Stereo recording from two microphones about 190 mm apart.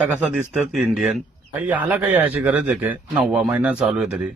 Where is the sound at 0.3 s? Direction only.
5° right (ahead or behind).